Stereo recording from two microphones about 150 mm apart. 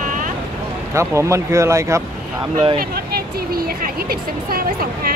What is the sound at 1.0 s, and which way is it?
Speech, 20° right (ahead or behind).